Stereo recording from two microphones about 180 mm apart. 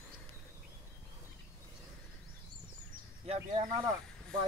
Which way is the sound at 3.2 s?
30° right (ahead or behind).